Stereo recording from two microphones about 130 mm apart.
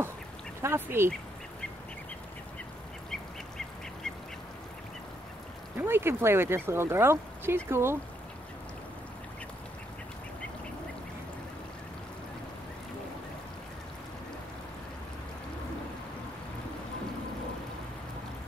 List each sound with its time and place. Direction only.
0.6 s speech: 20° right (ahead or behind)
3.1 s duck: 5° left (ahead or behind)
5.8 s speech: 15° right (ahead or behind)